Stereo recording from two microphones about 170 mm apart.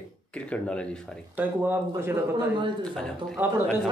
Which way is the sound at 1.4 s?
10° right (ahead or behind).